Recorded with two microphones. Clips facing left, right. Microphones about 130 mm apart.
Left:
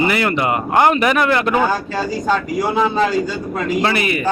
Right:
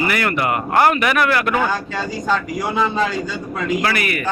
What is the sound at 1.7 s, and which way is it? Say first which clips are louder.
Speech: left 3 dB; 5° left (ahead or behind).